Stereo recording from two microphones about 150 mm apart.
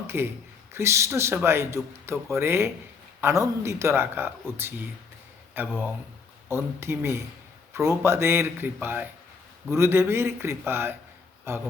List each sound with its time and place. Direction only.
0.1 s speech: 15° right (ahead or behind)